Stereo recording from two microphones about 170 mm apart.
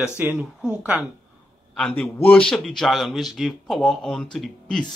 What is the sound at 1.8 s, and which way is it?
Speech, 5° left (ahead or behind).